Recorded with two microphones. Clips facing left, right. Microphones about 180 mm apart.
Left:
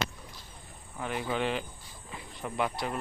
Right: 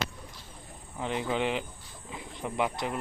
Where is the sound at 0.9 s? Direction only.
20° right (ahead or behind).